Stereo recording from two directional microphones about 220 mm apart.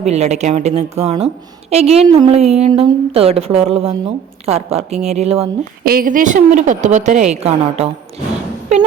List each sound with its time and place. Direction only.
0.0 s a woman's voice: 30° right (ahead or behind)
5.8 s a woman's voice: 40° right (ahead or behind)